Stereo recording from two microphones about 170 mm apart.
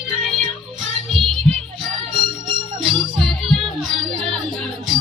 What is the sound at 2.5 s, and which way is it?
Music, 25° right (ahead or behind).